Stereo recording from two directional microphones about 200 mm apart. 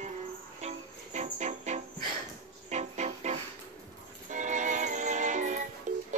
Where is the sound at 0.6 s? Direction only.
35° right (ahead or behind).